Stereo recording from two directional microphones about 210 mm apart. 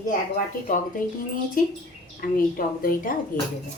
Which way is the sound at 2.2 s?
45° left (ahead or behind).